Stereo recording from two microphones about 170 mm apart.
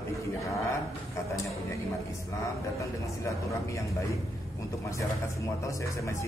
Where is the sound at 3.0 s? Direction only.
20° left (ahead or behind).